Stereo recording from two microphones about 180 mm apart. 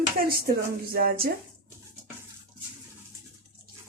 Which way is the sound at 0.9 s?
55° right (ahead or behind).